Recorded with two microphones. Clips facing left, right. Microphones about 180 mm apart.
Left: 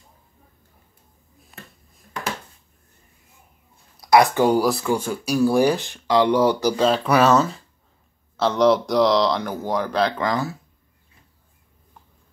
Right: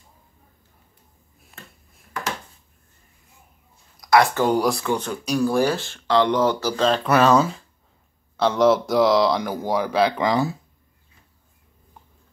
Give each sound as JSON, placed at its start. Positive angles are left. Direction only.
{"t": 3.9, "sound": "a sound", "side_deg": 30}
{"t": 4.2, "sound": "speech", "side_deg": 15}
{"t": 8.4, "sound": "speech", "side_deg": 0}